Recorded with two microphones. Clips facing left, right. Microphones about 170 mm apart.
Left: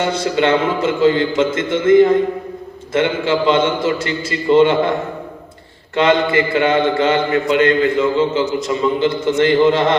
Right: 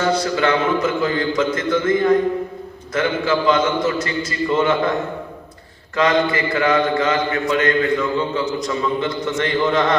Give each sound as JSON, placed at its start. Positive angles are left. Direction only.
{"t": 0.0, "sound": "a man's voice", "side_deg": 25}
{"t": 6.0, "sound": "a man's voice", "side_deg": 25}